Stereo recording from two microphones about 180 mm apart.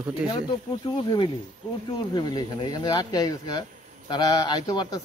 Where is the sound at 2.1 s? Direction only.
20° left (ahead or behind).